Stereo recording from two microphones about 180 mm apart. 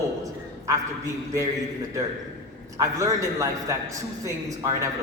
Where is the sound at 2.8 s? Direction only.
20° right (ahead or behind).